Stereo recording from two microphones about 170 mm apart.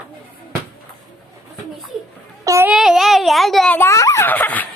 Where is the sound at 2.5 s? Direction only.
15° right (ahead or behind).